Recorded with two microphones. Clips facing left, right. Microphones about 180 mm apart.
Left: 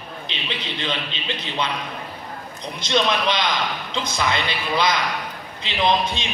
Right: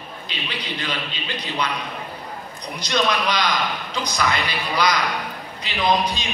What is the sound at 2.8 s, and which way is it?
A man's voice, 25° left (ahead or behind).